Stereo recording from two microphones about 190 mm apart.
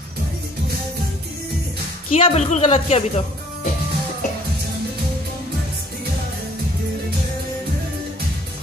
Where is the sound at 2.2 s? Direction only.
35° left (ahead or behind).